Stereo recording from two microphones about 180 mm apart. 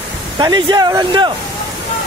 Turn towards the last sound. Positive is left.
turn(degrees=-25)  # may be behind; listen again after turning